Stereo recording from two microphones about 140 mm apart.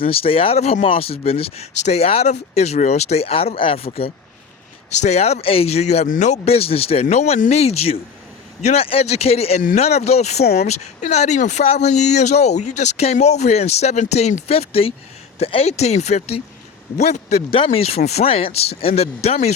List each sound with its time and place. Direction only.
0.0 s speech: 40° left (ahead or behind)
6.1 s speech: 60° left (ahead or behind)